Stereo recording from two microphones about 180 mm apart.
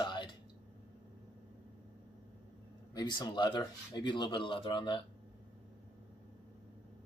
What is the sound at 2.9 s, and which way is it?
Speech, 25° left (ahead or behind).